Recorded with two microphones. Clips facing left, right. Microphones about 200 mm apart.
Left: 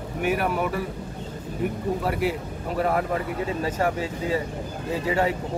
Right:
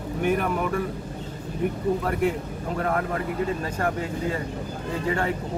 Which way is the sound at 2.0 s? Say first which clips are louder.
Right 1 dB; 5° left (ahead or behind).